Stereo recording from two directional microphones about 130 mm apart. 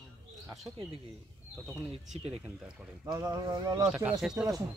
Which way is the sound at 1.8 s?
50° right (ahead or behind).